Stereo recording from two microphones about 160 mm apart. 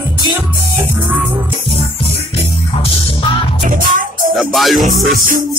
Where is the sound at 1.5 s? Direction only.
35° left (ahead or behind).